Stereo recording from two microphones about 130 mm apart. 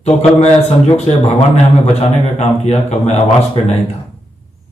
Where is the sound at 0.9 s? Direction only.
55° left (ahead or behind).